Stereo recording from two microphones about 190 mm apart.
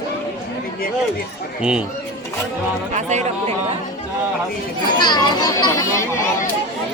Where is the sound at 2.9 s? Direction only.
35° right (ahead or behind).